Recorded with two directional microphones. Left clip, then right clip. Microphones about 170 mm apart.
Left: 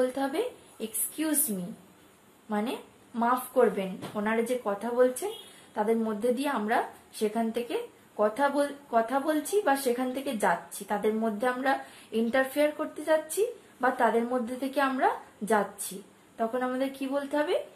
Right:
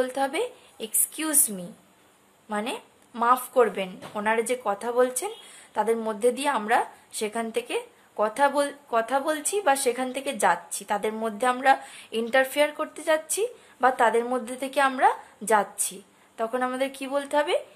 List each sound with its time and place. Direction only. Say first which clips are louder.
0.0 s a woman's voice: right 2 dB; 50° right (ahead or behind)